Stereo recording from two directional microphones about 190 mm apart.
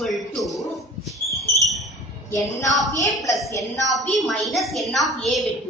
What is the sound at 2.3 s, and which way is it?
A woman's voice, 15° left (ahead or behind).